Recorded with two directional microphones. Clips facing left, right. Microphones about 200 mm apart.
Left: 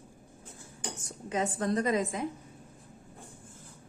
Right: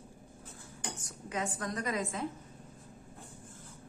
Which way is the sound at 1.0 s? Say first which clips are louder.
Left 6 dB; 25° left (ahead or behind).